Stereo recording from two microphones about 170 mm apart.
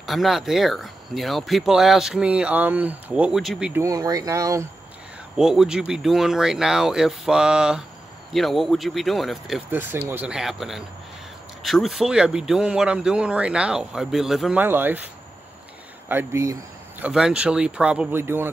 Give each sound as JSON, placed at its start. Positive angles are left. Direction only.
{"t": 0.0, "sound": "speech", "side_deg": 0}
{"t": 3.8, "sound": "speech", "side_deg": -20}
{"t": 5.4, "sound": "speech", "side_deg": -5}
{"t": 9.7, "sound": "speech", "side_deg": -10}
{"t": 16.1, "sound": "speech", "side_deg": -15}
{"t": 17.0, "sound": "speech", "side_deg": -5}